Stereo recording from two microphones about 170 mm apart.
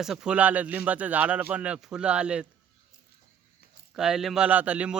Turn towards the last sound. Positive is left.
turn(degrees=-5)  # may be behind; listen again after turning